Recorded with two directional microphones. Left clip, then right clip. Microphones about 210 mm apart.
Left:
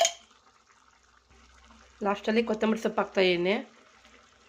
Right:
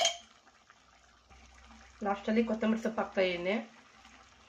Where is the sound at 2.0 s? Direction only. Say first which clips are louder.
Left 5 dB; 50° left (ahead or behind).